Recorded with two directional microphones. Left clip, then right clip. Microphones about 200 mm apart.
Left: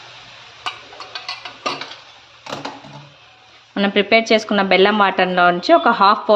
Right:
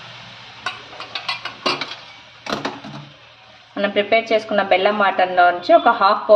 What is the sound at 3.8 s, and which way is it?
Speech, 50° left (ahead or behind).